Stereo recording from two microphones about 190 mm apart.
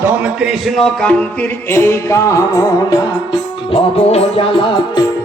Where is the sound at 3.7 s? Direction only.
30° left (ahead or behind).